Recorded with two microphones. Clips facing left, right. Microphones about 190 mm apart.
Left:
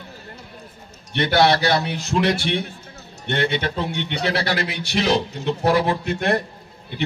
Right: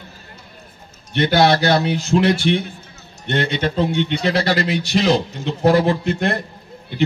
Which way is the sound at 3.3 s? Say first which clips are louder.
Right 2 dB; 60° left (ahead or behind).